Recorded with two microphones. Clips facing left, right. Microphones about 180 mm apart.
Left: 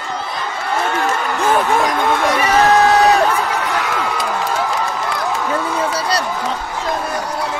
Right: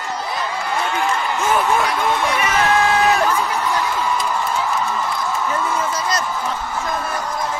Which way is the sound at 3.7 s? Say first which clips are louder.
Left 1 dB; 75° left (ahead or behind).